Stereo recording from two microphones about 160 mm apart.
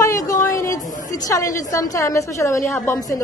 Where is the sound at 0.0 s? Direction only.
20° left (ahead or behind).